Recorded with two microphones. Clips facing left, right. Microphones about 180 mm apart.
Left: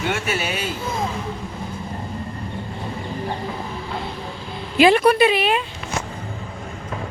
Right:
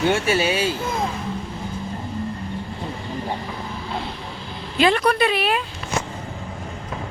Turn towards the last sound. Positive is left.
turn(degrees=0)  # may be behind; listen again after turning